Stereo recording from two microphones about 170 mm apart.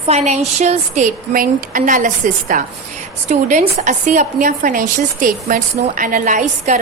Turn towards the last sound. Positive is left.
turn(degrees=-50)  # may be behind; listen again after turning